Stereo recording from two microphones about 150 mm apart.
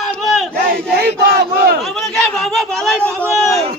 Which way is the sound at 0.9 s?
90° right.